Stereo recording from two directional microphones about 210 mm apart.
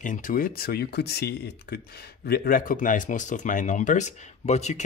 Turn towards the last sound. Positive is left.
turn(degrees=35)  # may be behind; listen again after turning